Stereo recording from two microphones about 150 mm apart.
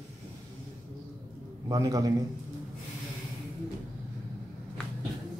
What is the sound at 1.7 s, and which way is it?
Speech, 25° right (ahead or behind).